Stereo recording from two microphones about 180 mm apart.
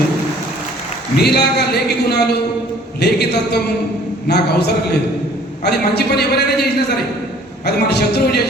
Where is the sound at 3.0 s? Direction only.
65° left (ahead or behind).